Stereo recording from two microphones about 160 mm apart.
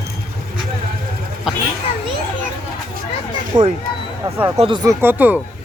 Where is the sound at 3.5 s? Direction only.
25° right (ahead or behind).